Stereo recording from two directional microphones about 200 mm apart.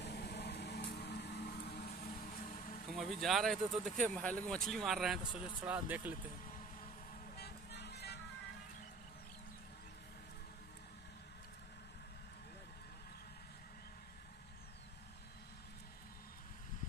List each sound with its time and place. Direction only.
0.0 s vehicle: 55° left (ahead or behind); by 2.8 s 40° left (ahead or behind)
2.9 s speech: centre (ahead or behind)
7.3 s music: 55° left (ahead or behind)